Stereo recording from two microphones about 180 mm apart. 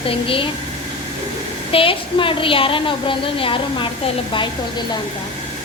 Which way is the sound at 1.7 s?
30° left (ahead or behind).